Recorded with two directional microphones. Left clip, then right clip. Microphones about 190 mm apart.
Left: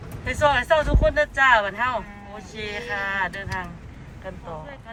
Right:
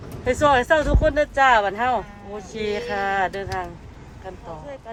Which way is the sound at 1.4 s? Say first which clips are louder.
Right 1 dB; 45° right (ahead or behind).